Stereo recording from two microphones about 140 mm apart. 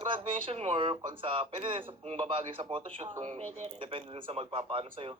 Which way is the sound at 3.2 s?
60° right (ahead or behind).